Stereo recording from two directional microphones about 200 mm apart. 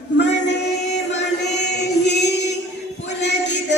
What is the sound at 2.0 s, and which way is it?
Music, 55° left (ahead or behind).